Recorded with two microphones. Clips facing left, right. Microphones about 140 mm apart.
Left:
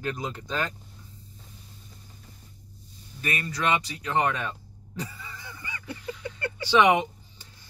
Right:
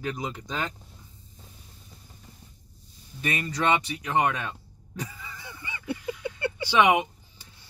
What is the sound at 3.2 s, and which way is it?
Speech, 25° right (ahead or behind).